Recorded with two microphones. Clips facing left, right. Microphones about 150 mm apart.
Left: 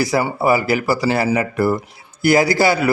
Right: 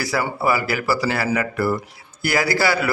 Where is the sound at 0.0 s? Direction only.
20° left (ahead or behind).